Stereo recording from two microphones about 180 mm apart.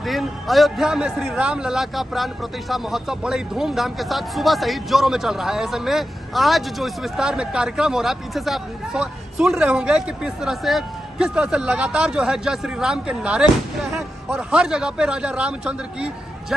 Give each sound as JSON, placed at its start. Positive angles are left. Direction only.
{"t": 0.0, "sound": "a man's voice", "side_deg": 0}